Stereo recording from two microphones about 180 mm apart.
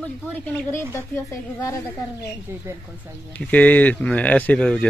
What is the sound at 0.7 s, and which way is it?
Speech, 15° left (ahead or behind).